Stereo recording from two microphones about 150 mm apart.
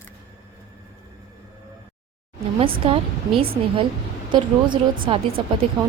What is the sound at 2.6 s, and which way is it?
A woman's voice, 35° right (ahead or behind).